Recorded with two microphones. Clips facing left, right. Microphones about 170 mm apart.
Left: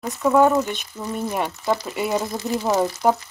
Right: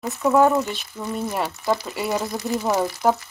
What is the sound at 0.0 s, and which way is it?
Speech, centre (ahead or behind).